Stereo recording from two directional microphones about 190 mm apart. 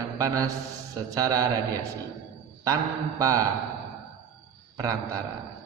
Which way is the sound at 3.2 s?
20° right (ahead or behind).